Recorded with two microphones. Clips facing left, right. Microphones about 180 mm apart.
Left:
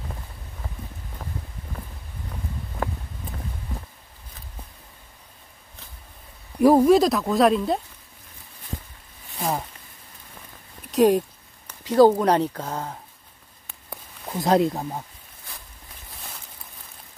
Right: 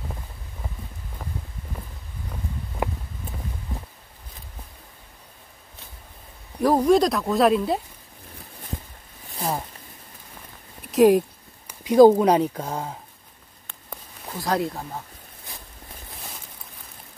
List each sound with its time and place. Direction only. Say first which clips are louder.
2.8 s a sound: right 1 dB; 15° right (ahead or behind)
6.6 s speech: left 3 dB; 10° left (ahead or behind)
10.9 s speech: right 2 dB; 5° right (ahead or behind)
14.4 s speech: left 5 dB; 20° left (ahead or behind)